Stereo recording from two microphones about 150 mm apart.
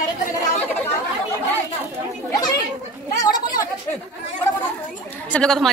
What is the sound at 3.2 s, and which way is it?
Speech, 25° left (ahead or behind).